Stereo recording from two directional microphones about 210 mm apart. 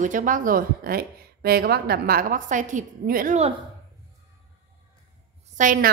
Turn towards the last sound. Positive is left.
turn(degrees=-40)  # may be behind; listen again after turning